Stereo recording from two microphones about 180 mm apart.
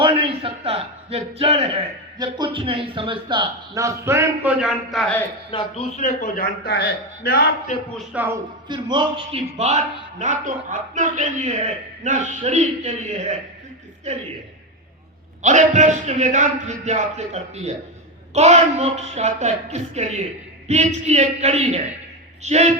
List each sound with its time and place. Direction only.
0.0 s a man's voice: 30° right (ahead or behind); by 5.2 s 5° left (ahead or behind)
5.5 s a man's voice: 30° left (ahead or behind)
6.0 s a man's voice: 45° left (ahead or behind); by 7.5 s 60° left (ahead or behind)
7.9 s speech: 10° right (ahead or behind)
8.6 s a man's voice: 25° right (ahead or behind)
15.4 s a man's voice: 40° right (ahead or behind)